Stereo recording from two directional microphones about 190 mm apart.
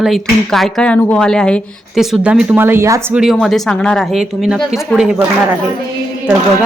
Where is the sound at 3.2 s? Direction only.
Centre (ahead or behind).